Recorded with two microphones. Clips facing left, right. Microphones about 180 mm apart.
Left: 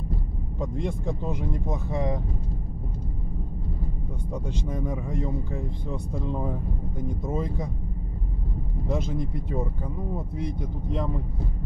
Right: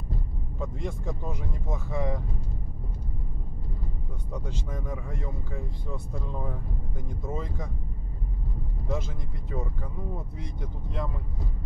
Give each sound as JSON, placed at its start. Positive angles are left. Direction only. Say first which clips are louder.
{"t": 0.6, "sound": "speech", "louder": "left 4 dB", "side_deg": 20}
{"t": 4.3, "sound": "speech", "louder": "left 4 dB", "side_deg": 15}
{"t": 8.9, "sound": "speech", "louder": "left 5 dB", "side_deg": 15}